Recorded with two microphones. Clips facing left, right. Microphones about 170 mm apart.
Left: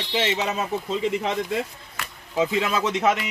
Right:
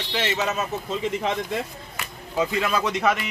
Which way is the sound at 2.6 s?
20° left (ahead or behind).